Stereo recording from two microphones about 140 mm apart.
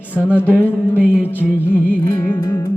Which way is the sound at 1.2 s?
15° left (ahead or behind).